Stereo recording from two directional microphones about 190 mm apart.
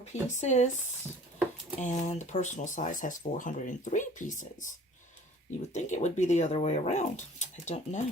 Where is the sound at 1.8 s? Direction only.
40° left (ahead or behind).